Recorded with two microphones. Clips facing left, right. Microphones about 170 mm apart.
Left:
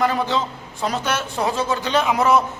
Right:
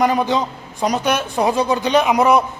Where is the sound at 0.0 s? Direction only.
15° right (ahead or behind).